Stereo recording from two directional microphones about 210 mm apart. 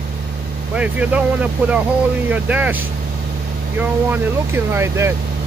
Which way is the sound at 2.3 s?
10° right (ahead or behind).